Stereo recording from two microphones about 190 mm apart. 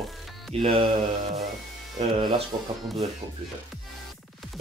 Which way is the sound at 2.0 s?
30° right (ahead or behind).